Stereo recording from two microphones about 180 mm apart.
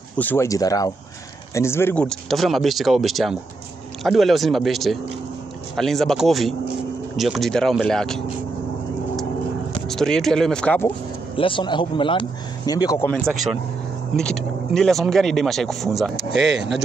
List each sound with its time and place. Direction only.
0.2 s speech: 15° left (ahead or behind)
9.8 s speech: 5° left (ahead or behind)
11.3 s speech: 30° left (ahead or behind)
14.1 s speech: 5° left (ahead or behind)